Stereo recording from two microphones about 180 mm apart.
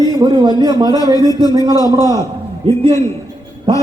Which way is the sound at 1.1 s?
20° left (ahead or behind).